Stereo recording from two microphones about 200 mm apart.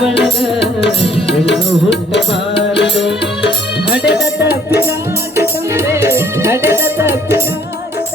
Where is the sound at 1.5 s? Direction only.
60° left (ahead or behind).